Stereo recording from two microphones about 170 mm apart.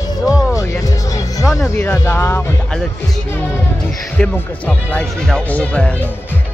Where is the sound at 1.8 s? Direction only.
15° left (ahead or behind).